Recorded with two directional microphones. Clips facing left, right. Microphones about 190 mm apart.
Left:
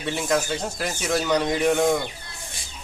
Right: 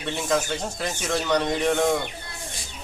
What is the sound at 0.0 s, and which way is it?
A man's voice, 5° left (ahead or behind).